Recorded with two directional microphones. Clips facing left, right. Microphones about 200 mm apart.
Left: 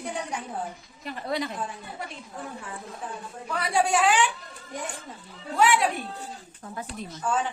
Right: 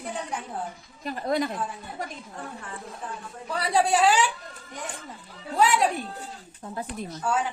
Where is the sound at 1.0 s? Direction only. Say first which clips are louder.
Right 4 dB; 45° right (ahead or behind).